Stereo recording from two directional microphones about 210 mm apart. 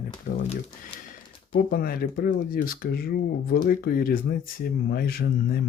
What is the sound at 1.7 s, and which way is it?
Speech, 45° left (ahead or behind).